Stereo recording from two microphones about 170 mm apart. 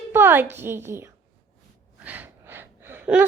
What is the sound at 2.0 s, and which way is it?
Gasp, 10° right (ahead or behind).